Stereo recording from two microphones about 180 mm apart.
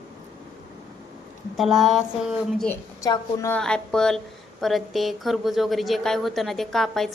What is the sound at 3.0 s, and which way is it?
Speech, 15° left (ahead or behind).